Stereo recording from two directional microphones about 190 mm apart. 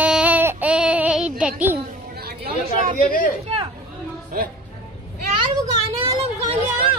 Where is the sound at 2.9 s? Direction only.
45° left (ahead or behind).